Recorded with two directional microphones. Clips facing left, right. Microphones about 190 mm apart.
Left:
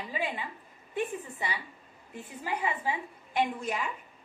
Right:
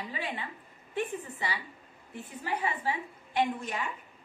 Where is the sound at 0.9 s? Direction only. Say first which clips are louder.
Left 1 dB; 20° left (ahead or behind).